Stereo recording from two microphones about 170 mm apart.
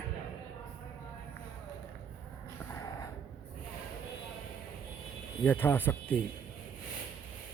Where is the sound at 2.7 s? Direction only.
20° left (ahead or behind).